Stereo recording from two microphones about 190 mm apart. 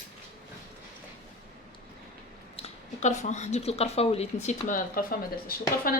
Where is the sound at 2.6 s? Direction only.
40° left (ahead or behind).